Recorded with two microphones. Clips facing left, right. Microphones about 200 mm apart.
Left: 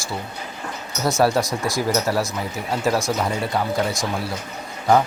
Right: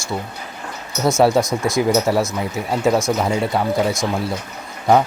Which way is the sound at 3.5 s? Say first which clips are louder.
Right 4 dB; centre (ahead or behind).